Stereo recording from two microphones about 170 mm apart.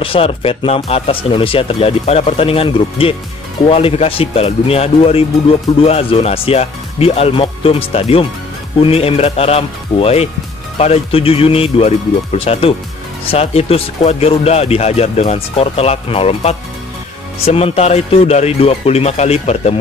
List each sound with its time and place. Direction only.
0.0 s speech: 30° left (ahead or behind)